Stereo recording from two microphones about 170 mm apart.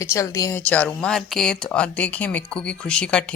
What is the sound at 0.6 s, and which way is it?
Speech, 10° left (ahead or behind).